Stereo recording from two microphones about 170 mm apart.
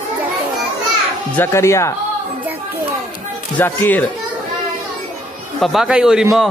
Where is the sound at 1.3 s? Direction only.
15° left (ahead or behind).